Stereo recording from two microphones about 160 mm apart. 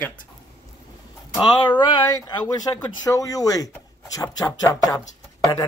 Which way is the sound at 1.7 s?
25° left (ahead or behind).